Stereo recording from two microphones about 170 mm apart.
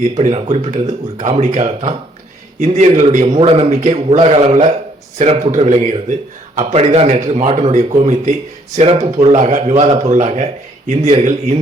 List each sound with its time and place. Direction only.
0.2 s a man's voice: 40° right (ahead or behind)